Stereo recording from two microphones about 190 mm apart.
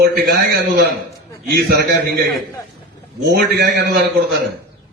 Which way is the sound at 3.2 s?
60° right (ahead or behind).